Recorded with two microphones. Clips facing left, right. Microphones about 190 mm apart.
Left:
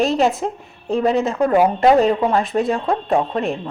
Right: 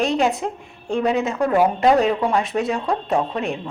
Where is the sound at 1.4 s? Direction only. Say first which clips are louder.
Left 2 dB; 20° left (ahead or behind).